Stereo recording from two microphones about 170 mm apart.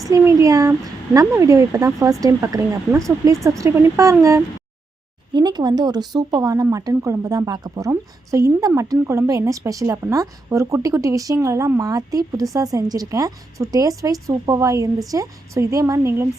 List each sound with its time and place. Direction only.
0.0 s speech: 20° right (ahead or behind)